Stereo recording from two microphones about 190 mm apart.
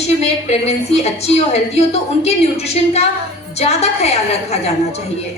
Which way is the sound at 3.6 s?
35° left (ahead or behind).